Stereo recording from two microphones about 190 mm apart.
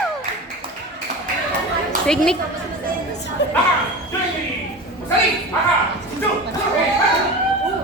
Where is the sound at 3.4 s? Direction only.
65° left (ahead or behind).